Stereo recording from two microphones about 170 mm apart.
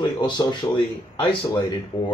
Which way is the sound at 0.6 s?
20° left (ahead or behind).